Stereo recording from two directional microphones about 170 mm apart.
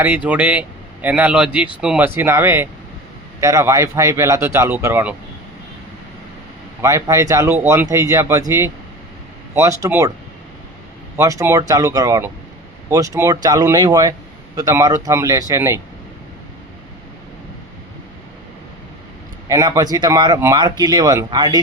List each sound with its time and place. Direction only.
0.0 s speech: 10° right (ahead or behind)
6.8 s speech: 20° right (ahead or behind)
11.2 s speech: 20° right (ahead or behind)
19.5 s speech: 20° right (ahead or behind)